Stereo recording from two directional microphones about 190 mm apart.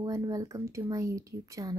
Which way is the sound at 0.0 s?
15° right (ahead or behind).